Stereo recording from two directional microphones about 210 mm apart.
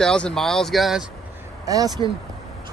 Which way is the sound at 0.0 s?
5° left (ahead or behind).